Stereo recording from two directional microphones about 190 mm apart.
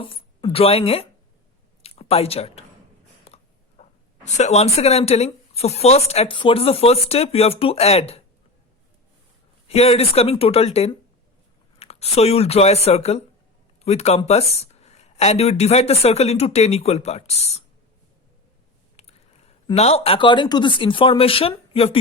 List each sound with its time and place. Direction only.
0.0 s speech: 30° left (ahead or behind)
1.8 s a sound: 30° left (ahead or behind)
3.2 s speech: 35° left (ahead or behind)
9.6 s speech: 30° left (ahead or behind)
18.9 s speech: 35° left (ahead or behind)